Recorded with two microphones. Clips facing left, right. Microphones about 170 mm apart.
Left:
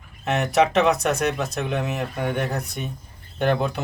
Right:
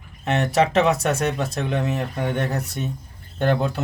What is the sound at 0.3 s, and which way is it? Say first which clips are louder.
Speech: even; centre (ahead or behind).